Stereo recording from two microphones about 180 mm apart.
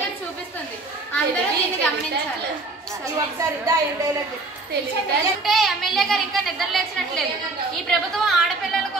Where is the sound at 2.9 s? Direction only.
15° right (ahead or behind).